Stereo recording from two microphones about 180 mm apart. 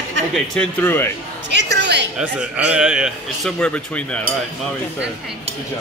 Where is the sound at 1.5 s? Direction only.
75° right (ahead or behind).